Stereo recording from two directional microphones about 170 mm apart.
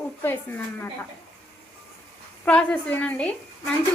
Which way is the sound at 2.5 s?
5° left (ahead or behind).